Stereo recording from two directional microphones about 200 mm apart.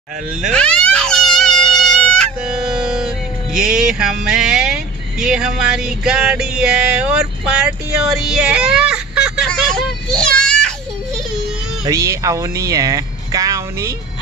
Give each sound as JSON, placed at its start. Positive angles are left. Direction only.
{"t": 0.4, "sound": "music", "side_deg": 5}
{"t": 3.5, "sound": "a sound", "side_deg": -5}
{"t": 11.8, "sound": "speech", "side_deg": -15}